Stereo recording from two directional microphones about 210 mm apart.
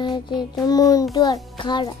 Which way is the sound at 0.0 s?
20° left (ahead or behind).